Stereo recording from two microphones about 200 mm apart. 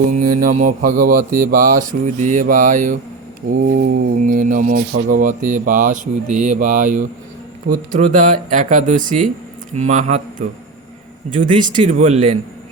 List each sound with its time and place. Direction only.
0.1 s speech: 40° right (ahead or behind)